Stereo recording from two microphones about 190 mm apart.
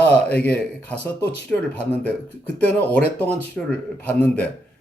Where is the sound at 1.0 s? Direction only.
5° left (ahead or behind).